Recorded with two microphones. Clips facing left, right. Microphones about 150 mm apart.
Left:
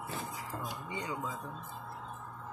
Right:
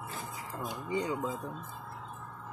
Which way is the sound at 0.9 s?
30° right (ahead or behind).